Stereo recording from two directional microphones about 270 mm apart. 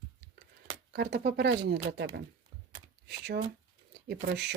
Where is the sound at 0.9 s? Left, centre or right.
Right.